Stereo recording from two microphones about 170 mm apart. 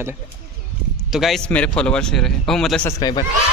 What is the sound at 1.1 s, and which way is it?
Speech, centre (ahead or behind).